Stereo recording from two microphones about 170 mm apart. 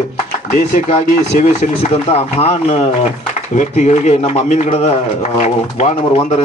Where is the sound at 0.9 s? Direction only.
40° left (ahead or behind).